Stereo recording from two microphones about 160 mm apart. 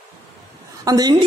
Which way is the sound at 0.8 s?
25° right (ahead or behind).